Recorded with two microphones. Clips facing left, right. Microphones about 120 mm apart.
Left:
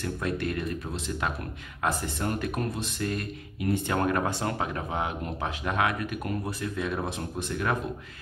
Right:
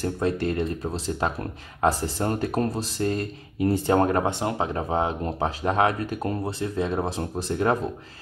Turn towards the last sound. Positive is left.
turn(degrees=-30)  # may be behind; listen again after turning